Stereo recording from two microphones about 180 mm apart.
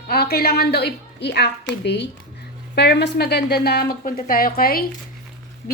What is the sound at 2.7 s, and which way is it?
A woman's voice, 65° left (ahead or behind).